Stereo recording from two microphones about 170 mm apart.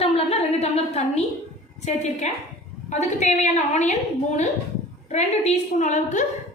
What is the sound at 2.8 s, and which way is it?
A woman's voice, 40° left (ahead or behind).